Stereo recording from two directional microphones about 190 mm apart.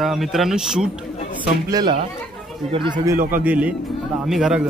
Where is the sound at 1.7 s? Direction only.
25° right (ahead or behind).